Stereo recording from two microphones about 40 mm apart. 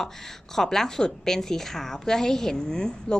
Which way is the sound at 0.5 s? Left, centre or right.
Centre.